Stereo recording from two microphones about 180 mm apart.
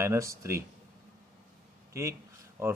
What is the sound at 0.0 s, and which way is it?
Speech, 15° right (ahead or behind).